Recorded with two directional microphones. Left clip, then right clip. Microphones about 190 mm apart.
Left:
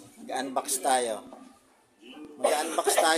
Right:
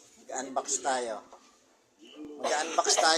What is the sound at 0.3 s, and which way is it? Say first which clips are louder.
Speech: left 3 dB; 20° left (ahead or behind).